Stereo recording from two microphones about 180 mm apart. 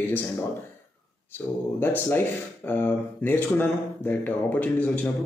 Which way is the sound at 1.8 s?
10° left (ahead or behind).